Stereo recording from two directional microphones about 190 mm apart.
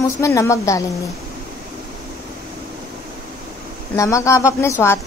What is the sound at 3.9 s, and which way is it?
A woman's voice, 15° left (ahead or behind).